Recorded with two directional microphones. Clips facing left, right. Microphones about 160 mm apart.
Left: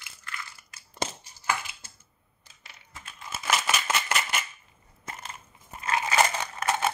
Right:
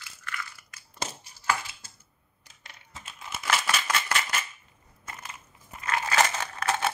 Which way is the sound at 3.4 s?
20° left (ahead or behind).